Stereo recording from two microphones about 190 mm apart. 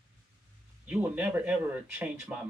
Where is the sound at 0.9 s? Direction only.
10° right (ahead or behind).